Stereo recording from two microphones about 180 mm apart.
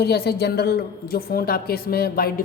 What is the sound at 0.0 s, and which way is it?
Speech, 65° left (ahead or behind).